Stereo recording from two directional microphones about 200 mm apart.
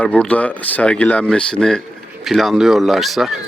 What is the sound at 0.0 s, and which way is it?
Speech, 5° left (ahead or behind).